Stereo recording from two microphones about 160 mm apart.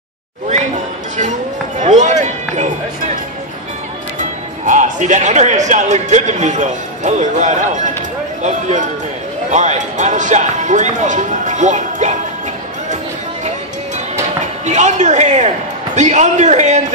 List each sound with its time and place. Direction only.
1.8 s a sound: 50° right (ahead or behind)
4.2 s speech: 55° right (ahead or behind)
14.7 s speech: 50° right (ahead or behind)